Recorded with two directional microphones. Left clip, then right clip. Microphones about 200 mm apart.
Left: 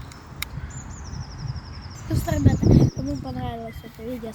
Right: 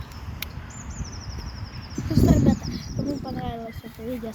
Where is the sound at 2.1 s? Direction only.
5° left (ahead or behind).